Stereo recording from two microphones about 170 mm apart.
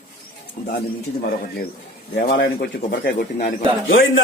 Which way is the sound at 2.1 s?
70° left (ahead or behind).